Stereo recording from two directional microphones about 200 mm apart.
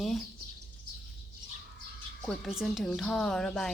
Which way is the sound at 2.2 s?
Centre (ahead or behind).